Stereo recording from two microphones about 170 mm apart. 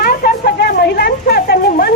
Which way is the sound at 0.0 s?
60° left (ahead or behind).